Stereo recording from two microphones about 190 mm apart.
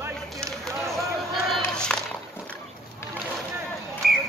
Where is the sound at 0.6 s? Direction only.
Centre (ahead or behind).